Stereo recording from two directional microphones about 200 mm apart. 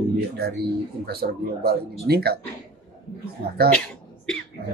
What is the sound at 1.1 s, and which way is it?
Speech, 50° right (ahead or behind).